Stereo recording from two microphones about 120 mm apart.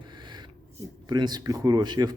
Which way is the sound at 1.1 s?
35° right (ahead or behind).